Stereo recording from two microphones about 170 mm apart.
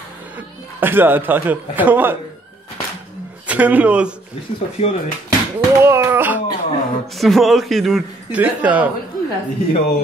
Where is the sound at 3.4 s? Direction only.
10° right (ahead or behind).